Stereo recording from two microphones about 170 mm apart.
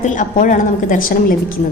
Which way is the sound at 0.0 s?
50° left (ahead or behind).